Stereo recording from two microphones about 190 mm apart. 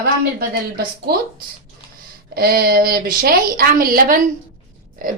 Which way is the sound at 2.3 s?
55° right (ahead or behind).